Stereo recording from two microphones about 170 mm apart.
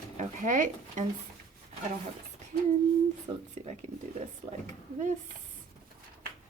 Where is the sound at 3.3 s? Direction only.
25° right (ahead or behind).